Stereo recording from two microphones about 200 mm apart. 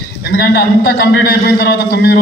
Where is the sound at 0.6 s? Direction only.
55° left (ahead or behind).